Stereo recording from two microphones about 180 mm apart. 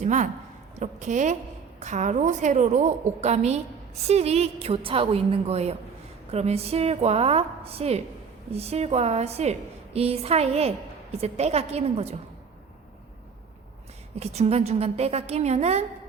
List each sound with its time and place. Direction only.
0.0 s a woman's voice: 40° right (ahead or behind)
14.2 s a woman's voice: 35° right (ahead or behind)